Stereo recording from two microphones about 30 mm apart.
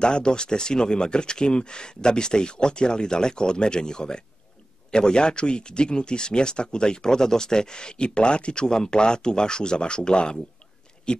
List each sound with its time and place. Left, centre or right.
0.0 s speech: left